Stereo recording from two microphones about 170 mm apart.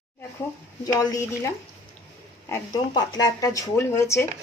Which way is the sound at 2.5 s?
20° left (ahead or behind).